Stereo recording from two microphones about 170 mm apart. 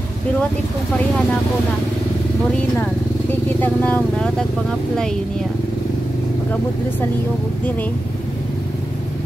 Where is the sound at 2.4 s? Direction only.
10° left (ahead or behind).